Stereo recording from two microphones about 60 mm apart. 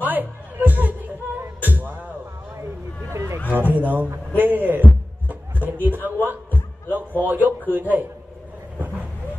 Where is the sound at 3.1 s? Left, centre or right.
Right.